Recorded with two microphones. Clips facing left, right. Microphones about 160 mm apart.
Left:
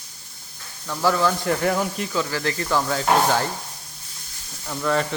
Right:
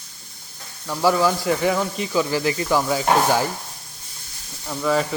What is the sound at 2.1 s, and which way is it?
Speech, 10° right (ahead or behind).